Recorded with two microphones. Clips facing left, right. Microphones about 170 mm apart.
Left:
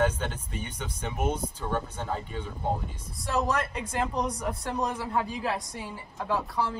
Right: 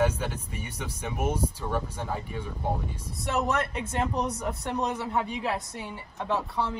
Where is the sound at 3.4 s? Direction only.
25° right (ahead or behind).